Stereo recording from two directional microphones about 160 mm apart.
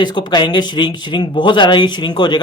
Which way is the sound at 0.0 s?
25° left (ahead or behind).